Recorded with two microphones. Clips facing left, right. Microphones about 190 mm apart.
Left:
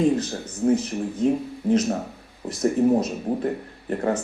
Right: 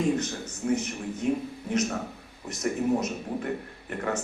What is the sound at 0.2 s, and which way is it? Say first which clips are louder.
Speech: left 6 dB; 35° left (ahead or behind).